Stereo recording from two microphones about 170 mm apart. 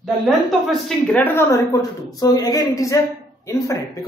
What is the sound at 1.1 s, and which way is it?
Speech, 10° left (ahead or behind).